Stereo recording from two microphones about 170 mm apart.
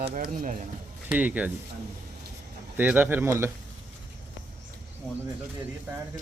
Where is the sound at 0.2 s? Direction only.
55° right (ahead or behind).